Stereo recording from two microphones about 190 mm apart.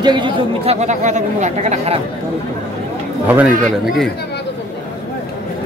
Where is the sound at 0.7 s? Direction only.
40° right (ahead or behind).